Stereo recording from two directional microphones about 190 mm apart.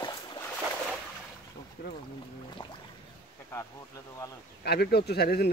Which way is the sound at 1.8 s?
55° left (ahead or behind).